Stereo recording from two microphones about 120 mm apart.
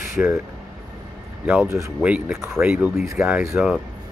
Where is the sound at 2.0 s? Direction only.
10° right (ahead or behind).